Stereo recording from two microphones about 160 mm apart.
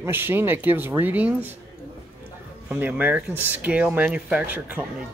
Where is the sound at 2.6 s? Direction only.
10° right (ahead or behind).